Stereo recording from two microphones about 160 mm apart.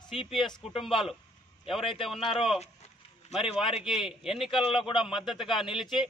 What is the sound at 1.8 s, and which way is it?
Speech, 35° left (ahead or behind).